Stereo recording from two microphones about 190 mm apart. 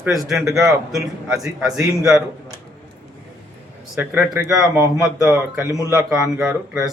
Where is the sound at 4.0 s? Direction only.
15° right (ahead or behind).